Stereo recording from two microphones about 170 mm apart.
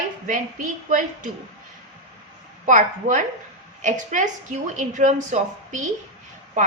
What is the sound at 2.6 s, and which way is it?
A woman's voice, 45° right (ahead or behind).